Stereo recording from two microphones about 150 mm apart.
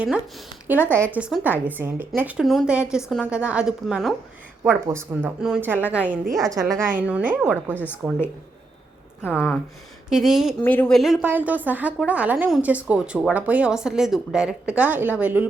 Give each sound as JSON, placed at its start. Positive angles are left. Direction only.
{"t": 0.0, "sound": "speech", "side_deg": -10}
{"t": 0.9, "sound": "speech", "side_deg": 10}
{"t": 1.1, "sound": "a woman's voice", "side_deg": -10}
{"t": 4.6, "sound": "speech", "side_deg": -15}
{"t": 6.4, "sound": "a woman's voice", "side_deg": -20}
{"t": 7.0, "sound": "speech", "side_deg": -10}
{"t": 7.7, "sound": "speech", "side_deg": 10}
{"t": 9.2, "sound": "speech", "side_deg": 15}
{"t": 10.1, "sound": "a woman's voice", "side_deg": 0}
{"t": 10.6, "sound": "speech", "side_deg": 10}
{"t": 10.9, "sound": "a woman's voice", "side_deg": 0}
{"t": 11.3, "sound": "speech", "side_deg": -10}